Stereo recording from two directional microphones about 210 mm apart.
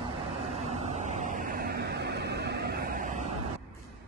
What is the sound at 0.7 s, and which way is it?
Vehicle, 35° right (ahead or behind).